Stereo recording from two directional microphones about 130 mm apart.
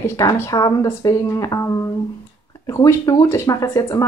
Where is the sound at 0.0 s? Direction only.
20° left (ahead or behind).